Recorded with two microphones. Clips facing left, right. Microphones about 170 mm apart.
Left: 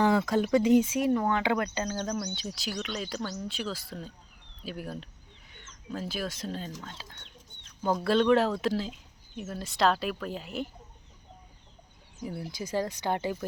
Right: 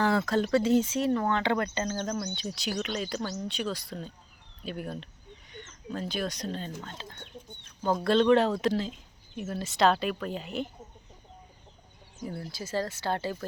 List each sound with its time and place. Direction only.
0.0 s speech: 15° left (ahead or behind)
7.9 s speech: 5° left (ahead or behind)
12.2 s speech: 10° left (ahead or behind)